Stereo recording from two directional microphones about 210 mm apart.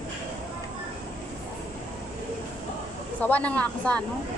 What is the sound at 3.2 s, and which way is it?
Speech, 5° left (ahead or behind).